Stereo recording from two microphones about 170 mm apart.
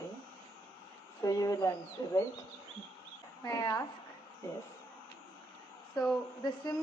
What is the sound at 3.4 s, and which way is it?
Speech, 20° left (ahead or behind).